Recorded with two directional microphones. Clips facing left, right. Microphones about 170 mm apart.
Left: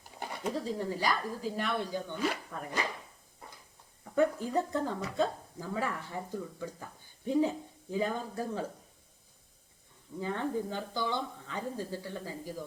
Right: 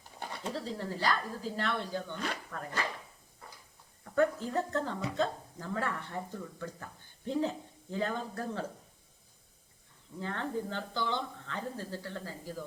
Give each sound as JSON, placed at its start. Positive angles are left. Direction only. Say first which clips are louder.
{"t": 0.2, "sound": "speech", "louder": "left 3 dB", "side_deg": 10}
{"t": 4.0, "sound": "speech", "louder": "left 1 dB", "side_deg": 15}
{"t": 10.2, "sound": "speech", "louder": "left 3 dB", "side_deg": 10}